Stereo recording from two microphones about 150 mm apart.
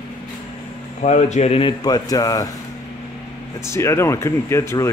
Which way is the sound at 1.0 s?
50° left (ahead or behind).